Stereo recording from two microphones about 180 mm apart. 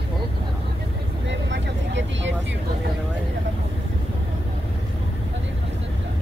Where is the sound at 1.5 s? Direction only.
90° right.